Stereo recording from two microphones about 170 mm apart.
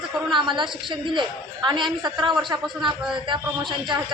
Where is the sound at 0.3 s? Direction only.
30° right (ahead or behind).